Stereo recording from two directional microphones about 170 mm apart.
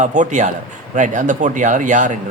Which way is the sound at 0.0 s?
45° right (ahead or behind).